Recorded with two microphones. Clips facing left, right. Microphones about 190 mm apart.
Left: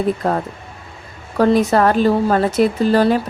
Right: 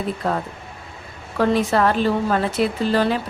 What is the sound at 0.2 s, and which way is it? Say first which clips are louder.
A woman's voice: left 4 dB; 50° left (ahead or behind).